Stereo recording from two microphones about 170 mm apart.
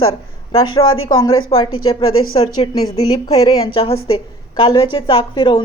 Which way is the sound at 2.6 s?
35° left (ahead or behind).